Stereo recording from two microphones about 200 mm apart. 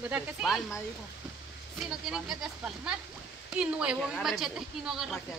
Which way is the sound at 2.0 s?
Centre (ahead or behind).